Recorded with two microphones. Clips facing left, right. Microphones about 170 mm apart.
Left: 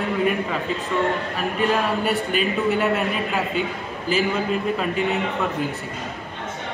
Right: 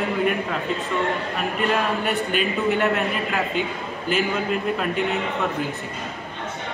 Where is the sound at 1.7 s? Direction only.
Centre (ahead or behind).